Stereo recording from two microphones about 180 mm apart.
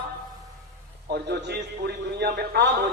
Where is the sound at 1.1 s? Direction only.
65° right (ahead or behind).